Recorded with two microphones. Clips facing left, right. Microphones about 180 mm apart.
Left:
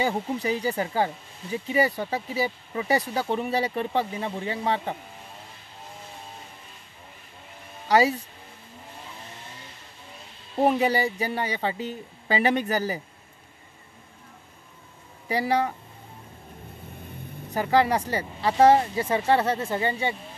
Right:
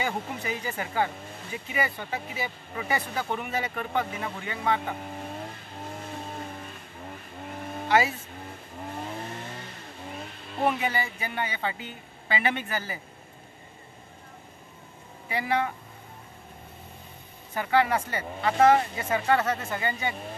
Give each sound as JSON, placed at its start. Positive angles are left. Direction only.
{"t": 0.0, "sound": "speech", "side_deg": 35}
{"t": 5.9, "sound": "vehicle", "side_deg": -60}
{"t": 7.9, "sound": "speech", "side_deg": 35}
{"t": 8.8, "sound": "vehicle", "side_deg": -60}
{"t": 10.6, "sound": "speech", "side_deg": 35}
{"t": 15.2, "sound": "speech", "side_deg": 35}
{"t": 17.6, "sound": "speech", "side_deg": 35}